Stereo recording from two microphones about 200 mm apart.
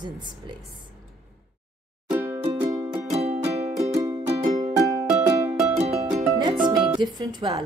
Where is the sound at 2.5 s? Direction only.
10° right (ahead or behind).